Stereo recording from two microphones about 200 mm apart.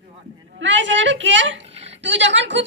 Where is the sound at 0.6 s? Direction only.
65° right (ahead or behind).